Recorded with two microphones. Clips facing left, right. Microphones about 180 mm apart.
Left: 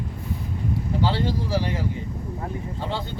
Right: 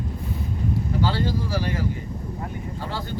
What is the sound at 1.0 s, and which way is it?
Speech, 20° left (ahead or behind).